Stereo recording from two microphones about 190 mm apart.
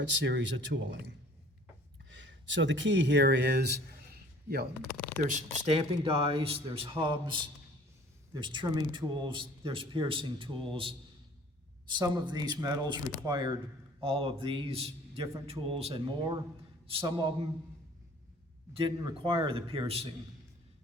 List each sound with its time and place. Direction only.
0.0 s speech: 70° right (ahead or behind)
4.9 s speech: 5° left (ahead or behind)
5.2 s speech: 35° right (ahead or behind)
11.9 s speech: 20° right (ahead or behind)
18.7 s speech: 25° right (ahead or behind)